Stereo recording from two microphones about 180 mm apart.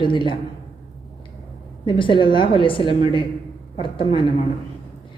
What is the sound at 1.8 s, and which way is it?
A woman's voice, 25° left (ahead or behind).